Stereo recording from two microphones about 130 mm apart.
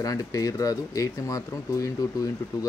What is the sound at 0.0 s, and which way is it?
Speech, 25° left (ahead or behind).